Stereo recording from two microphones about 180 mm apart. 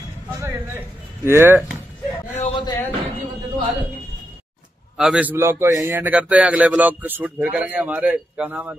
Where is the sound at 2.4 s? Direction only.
30° left (ahead or behind).